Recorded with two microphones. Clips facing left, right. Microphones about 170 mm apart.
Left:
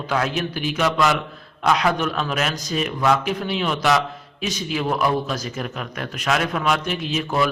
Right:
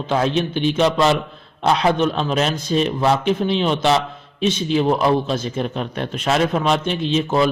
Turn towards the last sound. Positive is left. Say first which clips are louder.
# right 4 dB
turn(degrees=-25)  # may be behind; listen again after turning